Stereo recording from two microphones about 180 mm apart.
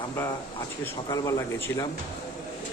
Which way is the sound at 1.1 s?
20° left (ahead or behind).